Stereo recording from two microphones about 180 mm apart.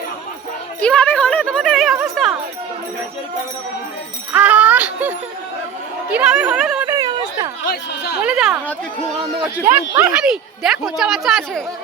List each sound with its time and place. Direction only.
0.8 s music: 5° left (ahead or behind)
4.3 s music: 10° right (ahead or behind)
6.1 s speech: 5° right (ahead or behind)
6.8 s a sound: 20° right (ahead or behind)
7.7 s speech: 65° left (ahead or behind)
8.2 s speech: 5° right (ahead or behind)
10.0 s speech: 5° right (ahead or behind)